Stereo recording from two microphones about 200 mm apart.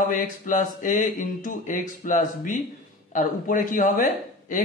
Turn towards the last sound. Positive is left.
turn(degrees=40)  # may be behind; listen again after turning